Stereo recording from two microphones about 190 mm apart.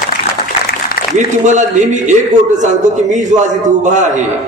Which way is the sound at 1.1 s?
40° right (ahead or behind).